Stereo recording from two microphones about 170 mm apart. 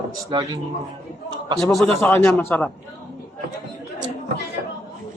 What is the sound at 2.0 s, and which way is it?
Speech, 10° left (ahead or behind).